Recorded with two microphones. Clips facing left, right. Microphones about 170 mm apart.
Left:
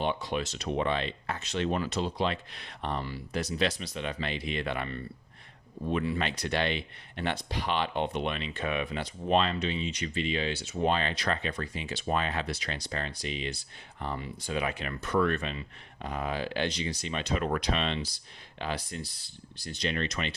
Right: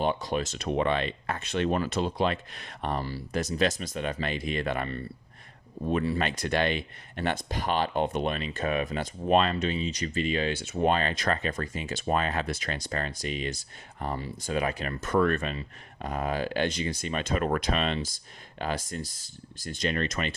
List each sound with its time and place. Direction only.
0.0 s speech: 40° right (ahead or behind)